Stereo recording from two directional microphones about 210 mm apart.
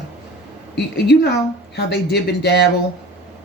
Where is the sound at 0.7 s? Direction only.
55° left (ahead or behind).